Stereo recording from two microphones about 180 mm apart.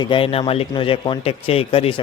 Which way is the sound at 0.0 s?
30° left (ahead or behind).